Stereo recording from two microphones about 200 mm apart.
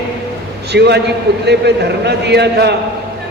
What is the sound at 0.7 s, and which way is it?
A man's voice, 55° right (ahead or behind).